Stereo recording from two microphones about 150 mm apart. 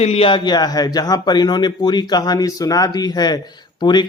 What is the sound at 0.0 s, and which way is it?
Speech, 40° left (ahead or behind).